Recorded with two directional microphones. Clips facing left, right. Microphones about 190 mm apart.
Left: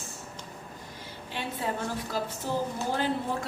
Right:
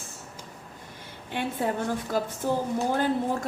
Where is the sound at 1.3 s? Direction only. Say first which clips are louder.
Right 5 dB; 55° right (ahead or behind).